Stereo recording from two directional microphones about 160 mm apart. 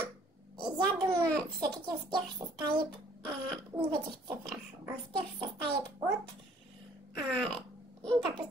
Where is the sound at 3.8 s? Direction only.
30° right (ahead or behind).